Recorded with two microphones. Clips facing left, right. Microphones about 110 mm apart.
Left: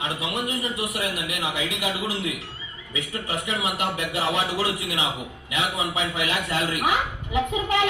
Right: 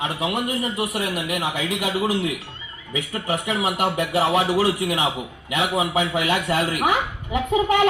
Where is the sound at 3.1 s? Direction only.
40° right (ahead or behind).